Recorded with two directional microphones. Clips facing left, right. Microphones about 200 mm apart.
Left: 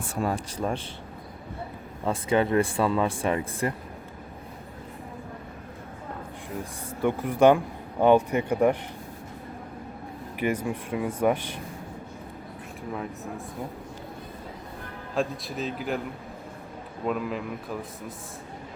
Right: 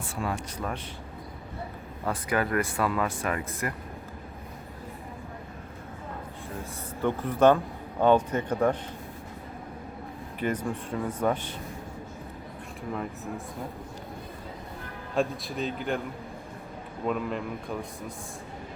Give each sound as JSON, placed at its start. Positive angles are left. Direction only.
{"t": 0.0, "sound": "a man's voice", "side_deg": 40}
{"t": 2.0, "sound": "speech", "side_deg": 25}
{"t": 7.0, "sound": "speech", "side_deg": 10}
{"t": 10.4, "sound": "speech", "side_deg": 10}
{"t": 15.1, "sound": "a man's voice", "side_deg": 0}
{"t": 17.1, "sound": "a man's voice", "side_deg": 5}